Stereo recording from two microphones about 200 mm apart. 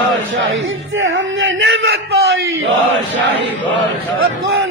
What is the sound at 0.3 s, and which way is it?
Speech, 75° right (ahead or behind).